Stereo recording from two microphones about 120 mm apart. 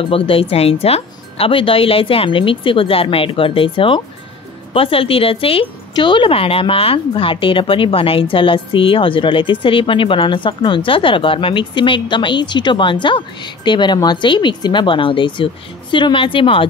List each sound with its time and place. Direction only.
0.0 s a woman's voice: 50° left (ahead or behind)